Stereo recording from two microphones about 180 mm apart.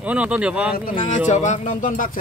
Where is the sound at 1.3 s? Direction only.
40° left (ahead or behind).